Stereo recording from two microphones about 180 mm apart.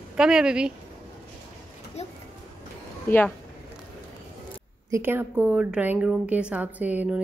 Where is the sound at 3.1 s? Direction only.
10° left (ahead or behind).